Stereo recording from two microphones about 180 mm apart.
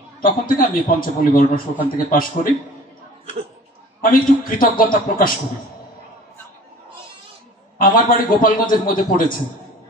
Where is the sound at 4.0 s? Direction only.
50° left (ahead or behind).